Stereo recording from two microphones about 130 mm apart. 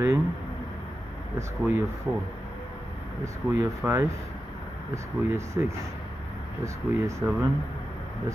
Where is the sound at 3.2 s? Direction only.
20° right (ahead or behind).